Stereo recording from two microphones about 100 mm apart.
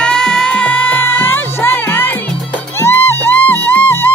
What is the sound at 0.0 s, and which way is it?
Music, 5° left (ahead or behind).